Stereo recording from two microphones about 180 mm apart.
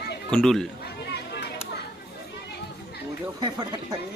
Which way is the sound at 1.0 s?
70° left (ahead or behind).